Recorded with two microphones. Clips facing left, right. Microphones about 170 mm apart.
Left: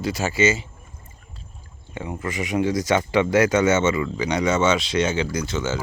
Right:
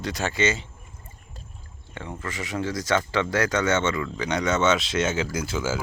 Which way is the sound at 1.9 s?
10° left (ahead or behind).